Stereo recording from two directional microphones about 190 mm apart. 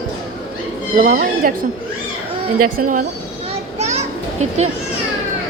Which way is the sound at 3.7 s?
35° right (ahead or behind).